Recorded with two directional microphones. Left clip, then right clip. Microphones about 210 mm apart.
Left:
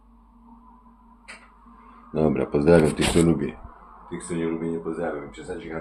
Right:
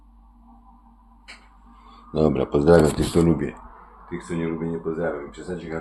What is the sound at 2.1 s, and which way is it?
Speech, 25° right (ahead or behind).